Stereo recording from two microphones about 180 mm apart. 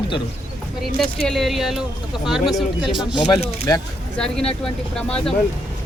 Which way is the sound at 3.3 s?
20° left (ahead or behind).